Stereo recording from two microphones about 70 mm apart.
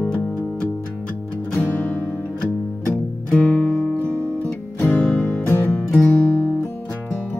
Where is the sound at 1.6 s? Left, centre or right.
Left.